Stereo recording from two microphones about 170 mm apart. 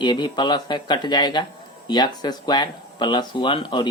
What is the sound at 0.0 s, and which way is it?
Speech, 25° left (ahead or behind).